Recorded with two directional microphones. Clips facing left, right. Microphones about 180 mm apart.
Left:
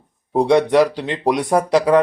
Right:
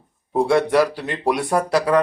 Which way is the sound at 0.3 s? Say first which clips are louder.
Left 3 dB; 20° left (ahead or behind).